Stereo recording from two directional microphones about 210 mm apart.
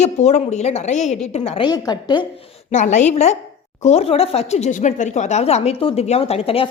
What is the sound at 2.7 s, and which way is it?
A woman's voice, 35° left (ahead or behind).